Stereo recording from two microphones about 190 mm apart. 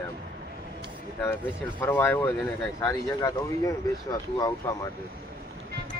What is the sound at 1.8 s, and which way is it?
Speech, 10° left (ahead or behind).